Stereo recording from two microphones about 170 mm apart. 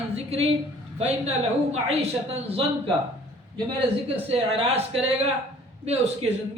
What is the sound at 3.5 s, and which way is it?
A man's voice, 35° right (ahead or behind).